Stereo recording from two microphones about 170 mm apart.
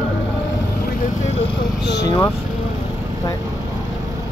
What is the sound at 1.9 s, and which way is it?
Speech, 25° left (ahead or behind).